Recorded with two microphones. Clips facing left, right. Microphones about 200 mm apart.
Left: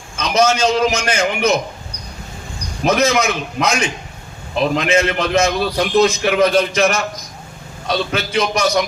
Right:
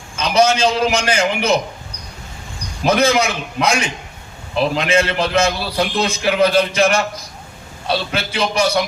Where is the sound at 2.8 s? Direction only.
30° right (ahead or behind).